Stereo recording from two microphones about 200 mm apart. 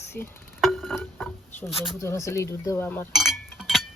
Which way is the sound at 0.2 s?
Centre (ahead or behind).